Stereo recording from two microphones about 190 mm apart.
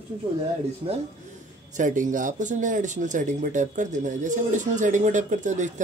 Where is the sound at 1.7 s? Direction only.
40° right (ahead or behind).